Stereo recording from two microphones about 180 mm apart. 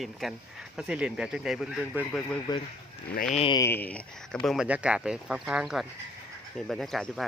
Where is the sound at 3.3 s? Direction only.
30° left (ahead or behind).